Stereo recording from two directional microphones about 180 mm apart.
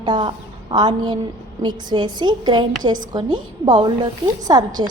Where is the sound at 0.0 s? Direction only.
25° right (ahead or behind).